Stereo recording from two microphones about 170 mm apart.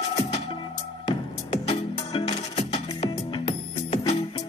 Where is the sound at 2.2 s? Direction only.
35° left (ahead or behind).